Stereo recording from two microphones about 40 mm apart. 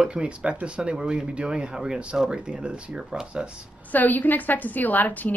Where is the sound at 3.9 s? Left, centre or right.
Left.